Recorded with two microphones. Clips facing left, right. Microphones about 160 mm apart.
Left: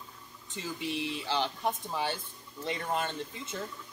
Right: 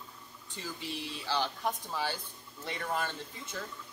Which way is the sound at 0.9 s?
20° left (ahead or behind).